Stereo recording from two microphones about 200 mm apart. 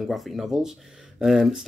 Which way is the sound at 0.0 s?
Centre (ahead or behind).